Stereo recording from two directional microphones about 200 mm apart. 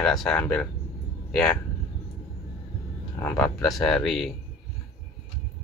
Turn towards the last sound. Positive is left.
turn(degrees=0)  # may be behind; listen again after turning